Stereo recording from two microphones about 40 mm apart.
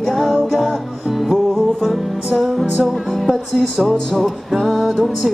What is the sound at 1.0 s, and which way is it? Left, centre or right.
Music, centre.